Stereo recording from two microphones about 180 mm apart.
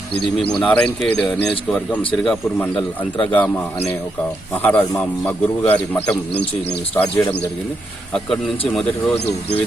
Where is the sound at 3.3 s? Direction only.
5° left (ahead or behind).